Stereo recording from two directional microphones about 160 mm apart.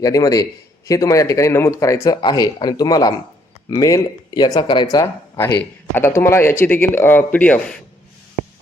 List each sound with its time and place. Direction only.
0.0 s speech: 20° left (ahead or behind)